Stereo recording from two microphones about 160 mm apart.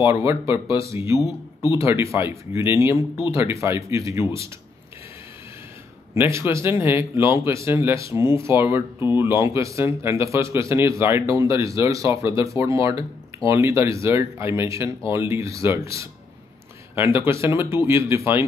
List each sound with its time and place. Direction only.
0.0 s speech: 20° right (ahead or behind)
1.2 s speech: 25° left (ahead or behind)
1.8 s speech: 15° right (ahead or behind)
6.1 s speech: 15° right (ahead or behind)